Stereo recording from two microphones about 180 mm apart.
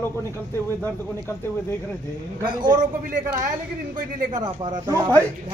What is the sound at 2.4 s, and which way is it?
Speech, 25° right (ahead or behind).